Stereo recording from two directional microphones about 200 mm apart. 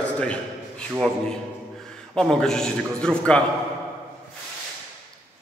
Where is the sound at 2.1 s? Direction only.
5° left (ahead or behind).